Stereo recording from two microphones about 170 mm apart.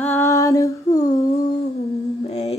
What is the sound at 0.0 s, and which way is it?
Female singing, 15° left (ahead or behind).